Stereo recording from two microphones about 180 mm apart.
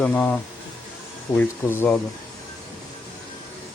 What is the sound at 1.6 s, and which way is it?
Speech, 10° left (ahead or behind).